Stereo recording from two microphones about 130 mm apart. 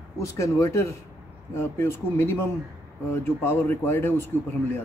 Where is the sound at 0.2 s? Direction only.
25° left (ahead or behind).